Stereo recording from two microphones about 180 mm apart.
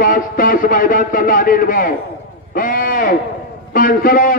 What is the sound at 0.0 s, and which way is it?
A man's voice, 50° left (ahead or behind).